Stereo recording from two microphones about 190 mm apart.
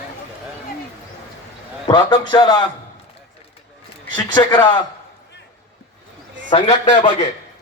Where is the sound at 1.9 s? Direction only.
20° left (ahead or behind).